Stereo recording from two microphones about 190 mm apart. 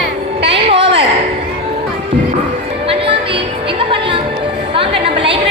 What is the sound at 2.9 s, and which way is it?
Music, 30° right (ahead or behind).